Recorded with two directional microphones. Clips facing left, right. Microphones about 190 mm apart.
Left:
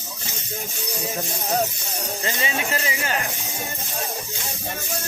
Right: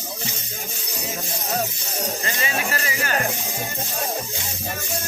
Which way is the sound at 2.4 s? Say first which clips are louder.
Even; 25° left (ahead or behind).